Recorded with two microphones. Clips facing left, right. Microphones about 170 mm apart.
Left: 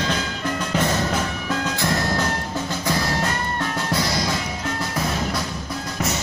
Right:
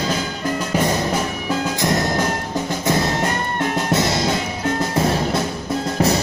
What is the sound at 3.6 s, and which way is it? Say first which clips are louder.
Music: right 7 dB; 25° right (ahead or behind).